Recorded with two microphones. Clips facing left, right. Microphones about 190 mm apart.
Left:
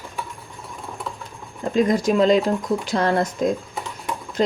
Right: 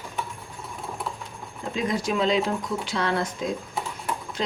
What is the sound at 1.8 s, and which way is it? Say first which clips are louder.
Speech: left 8 dB; 45° left (ahead or behind).